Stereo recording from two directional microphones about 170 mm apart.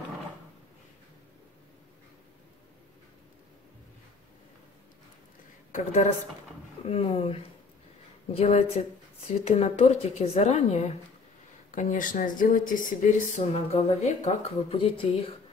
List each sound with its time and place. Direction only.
6.9 s speech: 35° left (ahead or behind)